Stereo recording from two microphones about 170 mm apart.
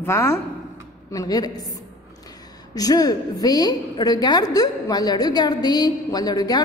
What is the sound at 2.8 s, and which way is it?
A woman's voice, 20° left (ahead or behind).